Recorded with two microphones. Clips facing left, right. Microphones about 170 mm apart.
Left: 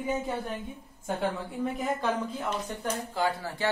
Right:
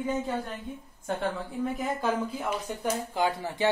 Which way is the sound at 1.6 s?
Centre (ahead or behind).